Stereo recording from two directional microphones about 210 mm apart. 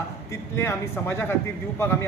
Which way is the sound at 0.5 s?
10° left (ahead or behind).